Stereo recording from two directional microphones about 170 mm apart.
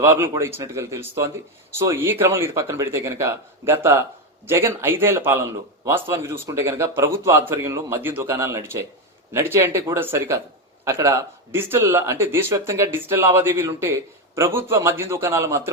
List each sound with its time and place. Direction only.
0.0 s speech: 15° right (ahead or behind)